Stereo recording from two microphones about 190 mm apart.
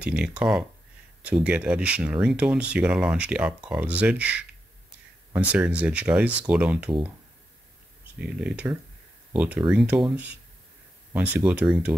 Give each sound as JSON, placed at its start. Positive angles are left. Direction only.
{"t": 0.0, "sound": "speech", "side_deg": -5}
{"t": 8.2, "sound": "speech", "side_deg": -5}
{"t": 11.1, "sound": "speech", "side_deg": -5}